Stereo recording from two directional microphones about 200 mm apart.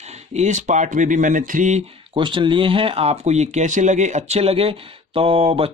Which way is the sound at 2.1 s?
25° right (ahead or behind).